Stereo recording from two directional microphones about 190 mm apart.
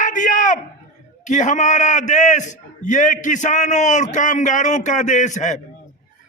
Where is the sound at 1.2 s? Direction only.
40° left (ahead or behind).